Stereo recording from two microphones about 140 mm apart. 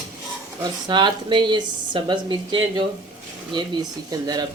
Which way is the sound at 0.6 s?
35° right (ahead or behind).